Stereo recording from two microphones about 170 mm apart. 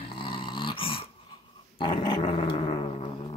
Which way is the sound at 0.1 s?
30° left (ahead or behind).